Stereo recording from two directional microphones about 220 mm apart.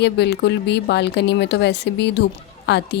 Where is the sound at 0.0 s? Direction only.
50° left (ahead or behind).